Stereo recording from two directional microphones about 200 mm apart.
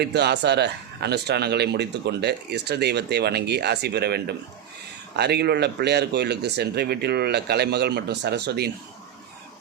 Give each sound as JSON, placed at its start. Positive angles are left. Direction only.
{"t": 0.0, "sound": "speech", "side_deg": -55}